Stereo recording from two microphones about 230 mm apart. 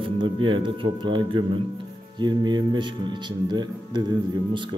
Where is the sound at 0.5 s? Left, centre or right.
Right.